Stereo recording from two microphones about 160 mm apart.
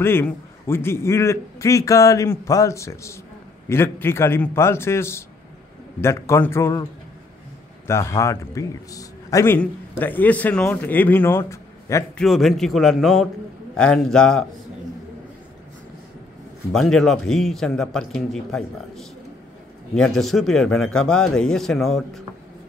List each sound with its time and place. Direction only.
0.0 s a man's voice: 15° left (ahead or behind)
7.8 s a man's voice: 15° left (ahead or behind)
12.2 s a man's voice: centre (ahead or behind)
16.7 s a man's voice: 5° left (ahead or behind)